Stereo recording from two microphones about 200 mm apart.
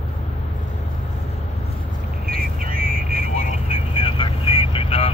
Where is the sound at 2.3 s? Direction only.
45° right (ahead or behind).